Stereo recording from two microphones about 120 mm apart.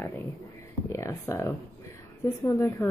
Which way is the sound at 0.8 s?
25° left (ahead or behind).